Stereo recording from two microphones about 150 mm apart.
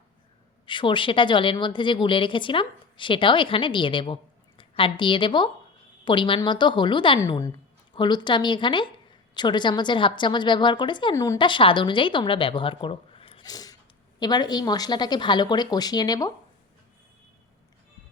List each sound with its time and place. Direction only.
0.6 s a woman's voice: 30° left (ahead or behind)
7.2 s a woman's voice: 25° left (ahead or behind)
11.1 s speech: 20° left (ahead or behind)
11.3 s a woman's voice: 35° left (ahead or behind)
13.4 s a sound: 25° left (ahead or behind)
14.2 s speech: 25° left (ahead or behind)